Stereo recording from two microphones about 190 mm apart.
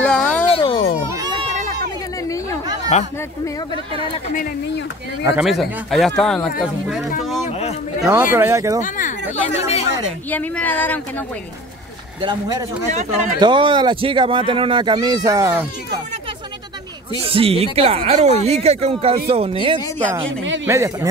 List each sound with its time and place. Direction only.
0.0 s a sound: 5° left (ahead or behind)
0.5 s a sound: 30° left (ahead or behind)
2.9 s speech: 35° left (ahead or behind)
5.4 s speech: centre (ahead or behind)
7.4 s a sound: 35° left (ahead or behind)
8.1 s speech: 10° right (ahead or behind)
8.8 s speech: 45° left (ahead or behind)
9.3 s speech: 35° left (ahead or behind)
10.3 s speech: 10° left (ahead or behind)
12.2 s speech: 20° right (ahead or behind)
12.9 s speech: 40° right (ahead or behind)
13.4 s speech: 25° right (ahead or behind)
17.2 s speech: 30° right (ahead or behind)
20.6 s speech: 15° right (ahead or behind)